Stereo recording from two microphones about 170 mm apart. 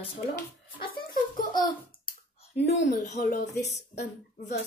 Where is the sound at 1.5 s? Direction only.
25° left (ahead or behind).